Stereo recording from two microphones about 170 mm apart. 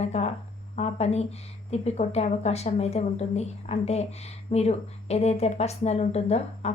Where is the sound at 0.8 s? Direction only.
40° left (ahead or behind).